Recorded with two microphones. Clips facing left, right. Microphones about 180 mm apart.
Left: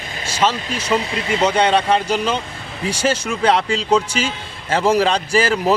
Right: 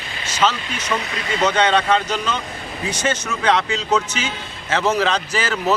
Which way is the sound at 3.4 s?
30° left (ahead or behind).